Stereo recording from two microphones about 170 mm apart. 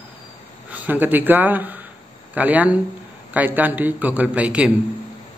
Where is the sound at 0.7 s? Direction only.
10° right (ahead or behind).